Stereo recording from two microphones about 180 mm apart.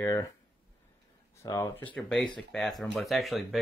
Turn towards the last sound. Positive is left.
turn(degrees=0)  # may be behind; listen again after turning